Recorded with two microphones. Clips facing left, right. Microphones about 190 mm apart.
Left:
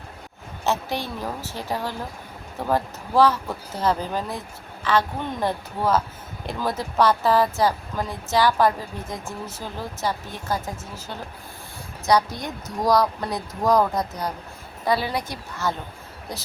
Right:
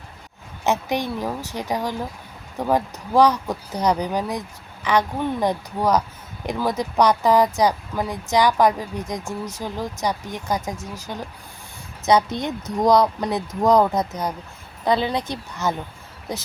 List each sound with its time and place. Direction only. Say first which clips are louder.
0.6 s a woman's voice: right 3 dB; 15° right (ahead or behind)